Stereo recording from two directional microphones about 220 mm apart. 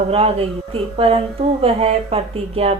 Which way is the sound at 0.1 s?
25° right (ahead or behind).